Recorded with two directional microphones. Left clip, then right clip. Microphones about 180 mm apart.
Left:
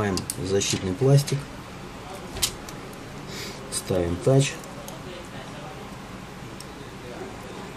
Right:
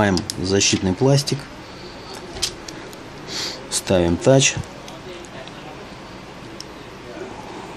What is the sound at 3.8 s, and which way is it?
Speech, 45° right (ahead or behind).